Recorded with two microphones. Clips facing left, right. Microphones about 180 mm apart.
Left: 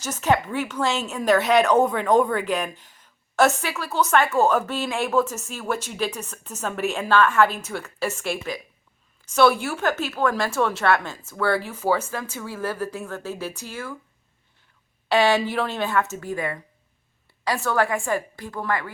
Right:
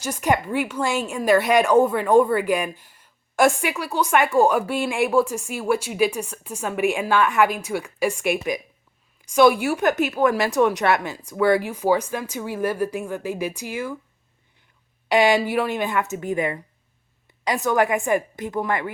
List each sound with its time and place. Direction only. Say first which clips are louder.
0.0 s speech: even; 10° right (ahead or behind)
15.1 s a woman's voice: right 2 dB; 15° right (ahead or behind)